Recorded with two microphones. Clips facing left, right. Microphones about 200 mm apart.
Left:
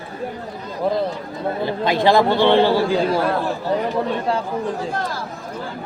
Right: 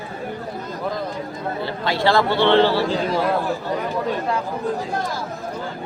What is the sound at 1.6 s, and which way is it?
A man's voice, 20° left (ahead or behind).